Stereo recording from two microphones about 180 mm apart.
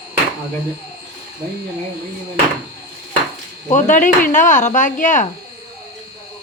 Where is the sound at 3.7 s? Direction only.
45° left (ahead or behind).